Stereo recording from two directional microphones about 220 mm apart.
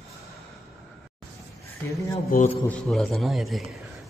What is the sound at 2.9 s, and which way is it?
Speech, centre (ahead or behind).